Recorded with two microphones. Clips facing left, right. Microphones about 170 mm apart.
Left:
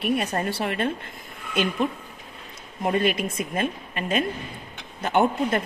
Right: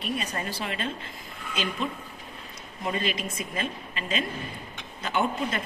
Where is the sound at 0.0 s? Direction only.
60° left (ahead or behind).